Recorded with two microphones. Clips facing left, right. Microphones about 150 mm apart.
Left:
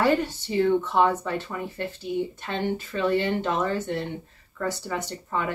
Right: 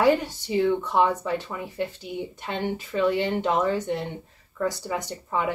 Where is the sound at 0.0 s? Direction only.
15° right (ahead or behind).